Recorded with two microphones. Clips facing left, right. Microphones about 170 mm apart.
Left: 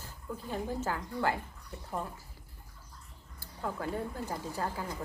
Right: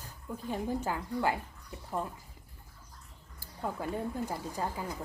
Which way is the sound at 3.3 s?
15° right (ahead or behind).